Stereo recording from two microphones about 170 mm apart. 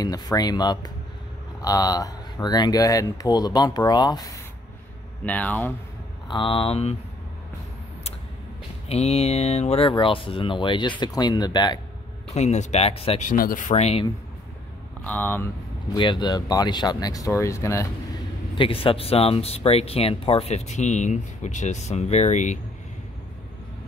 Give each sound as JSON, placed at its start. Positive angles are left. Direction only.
{"t": 0.0, "sound": "speech", "side_deg": 20}
{"t": 5.2, "sound": "speech", "side_deg": 10}
{"t": 6.2, "sound": "speech", "side_deg": 30}
{"t": 8.8, "sound": "speech", "side_deg": 35}
{"t": 12.4, "sound": "speech", "side_deg": 40}
{"t": 13.3, "sound": "speech", "side_deg": 55}
{"t": 15.0, "sound": "speech", "side_deg": 10}
{"t": 15.9, "sound": "speech", "side_deg": 25}
{"t": 18.6, "sound": "speech", "side_deg": 30}